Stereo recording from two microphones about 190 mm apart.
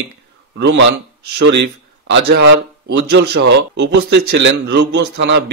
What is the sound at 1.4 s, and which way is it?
A man's voice, 65° right (ahead or behind).